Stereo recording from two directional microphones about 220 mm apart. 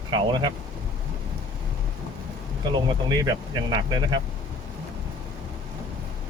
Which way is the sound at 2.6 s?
20° right (ahead or behind).